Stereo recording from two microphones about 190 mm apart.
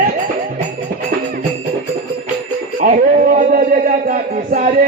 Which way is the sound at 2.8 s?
40° right (ahead or behind).